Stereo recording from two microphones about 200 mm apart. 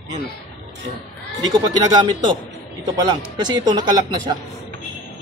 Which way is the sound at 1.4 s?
20° right (ahead or behind).